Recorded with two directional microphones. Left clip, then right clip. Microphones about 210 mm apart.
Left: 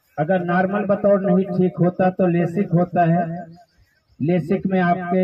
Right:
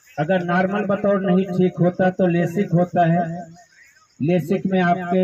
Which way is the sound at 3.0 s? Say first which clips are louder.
Even; 15° right (ahead or behind).